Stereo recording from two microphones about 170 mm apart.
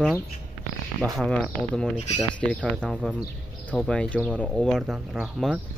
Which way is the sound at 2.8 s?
5° right (ahead or behind).